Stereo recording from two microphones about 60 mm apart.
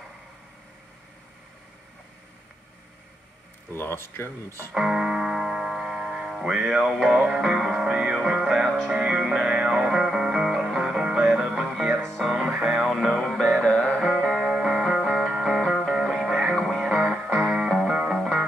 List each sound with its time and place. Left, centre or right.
3.7 s speech: left
4.7 s music: centre
7.2 s music: centre
7.9 s music: centre
11.9 s music: right
12.8 s music: centre